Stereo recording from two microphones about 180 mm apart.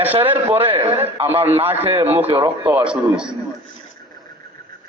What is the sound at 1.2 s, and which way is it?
Speech, 10° right (ahead or behind).